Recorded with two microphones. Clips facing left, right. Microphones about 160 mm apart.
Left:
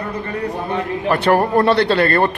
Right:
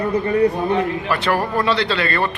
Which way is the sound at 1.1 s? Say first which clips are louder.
Left 5 dB; 35° left (ahead or behind).